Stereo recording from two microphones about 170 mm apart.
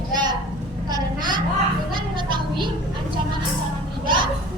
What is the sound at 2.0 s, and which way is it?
Music, 25° right (ahead or behind).